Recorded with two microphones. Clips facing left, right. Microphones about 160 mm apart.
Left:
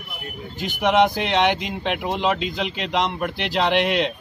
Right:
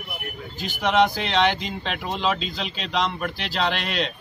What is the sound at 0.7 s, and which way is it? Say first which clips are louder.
A man's voice: left 2 dB; 15° left (ahead or behind).